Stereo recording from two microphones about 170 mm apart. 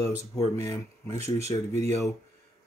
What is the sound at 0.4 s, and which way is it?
Speech, 20° left (ahead or behind).